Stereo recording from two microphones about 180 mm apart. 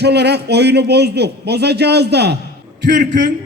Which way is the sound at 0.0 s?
65° right (ahead or behind).